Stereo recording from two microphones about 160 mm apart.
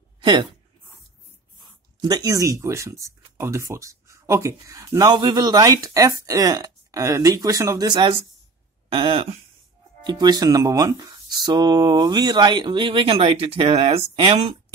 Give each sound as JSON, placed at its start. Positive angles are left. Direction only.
{"t": 0.2, "sound": "a sound", "side_deg": -30}
{"t": 2.0, "sound": "speech", "side_deg": -25}
{"t": 10.0, "sound": "speech", "side_deg": -25}